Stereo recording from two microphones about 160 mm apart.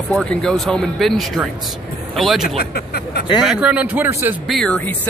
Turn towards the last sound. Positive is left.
turn(degrees=5)  # may be behind; listen again after turning